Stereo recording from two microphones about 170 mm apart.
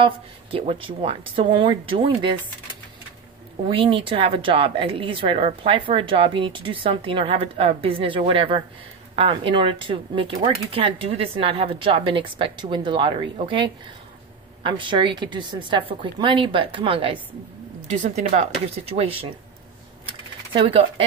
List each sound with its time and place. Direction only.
0.0 s a woman's voice: 35° right (ahead or behind)
3.6 s a woman's voice: 30° right (ahead or behind)
20.1 s a sound: 30° right (ahead or behind)